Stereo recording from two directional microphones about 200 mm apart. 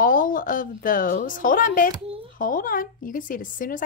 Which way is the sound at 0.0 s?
45° left (ahead or behind).